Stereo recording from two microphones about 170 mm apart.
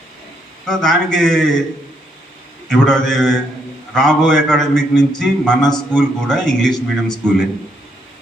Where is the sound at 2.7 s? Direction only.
5° left (ahead or behind).